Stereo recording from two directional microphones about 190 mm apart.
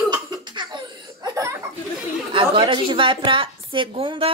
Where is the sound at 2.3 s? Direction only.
30° right (ahead or behind).